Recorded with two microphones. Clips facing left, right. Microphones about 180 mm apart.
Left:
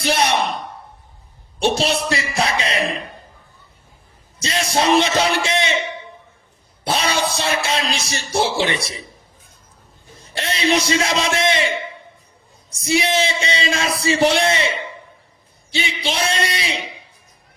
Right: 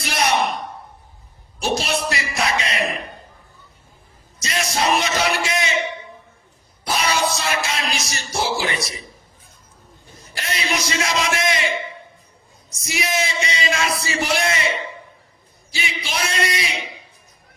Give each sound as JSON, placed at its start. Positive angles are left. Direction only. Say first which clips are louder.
{"t": 0.0, "sound": "a sound", "louder": "left 2 dB", "side_deg": 30}
{"t": 1.6, "sound": "speech", "louder": "left 3 dB", "side_deg": 30}
{"t": 4.4, "sound": "speech", "louder": "left 3 dB", "side_deg": 30}
{"t": 6.8, "sound": "speech", "louder": "left 1 dB", "side_deg": 30}
{"t": 10.2, "sound": "speech", "louder": "left 4 dB", "side_deg": 30}
{"t": 12.7, "sound": "a man's voice", "louder": "left 6 dB", "side_deg": 30}